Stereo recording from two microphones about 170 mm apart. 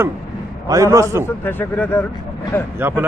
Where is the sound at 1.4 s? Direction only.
10° left (ahead or behind).